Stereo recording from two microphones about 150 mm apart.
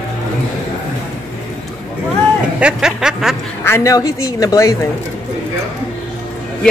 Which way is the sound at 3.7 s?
20° left (ahead or behind).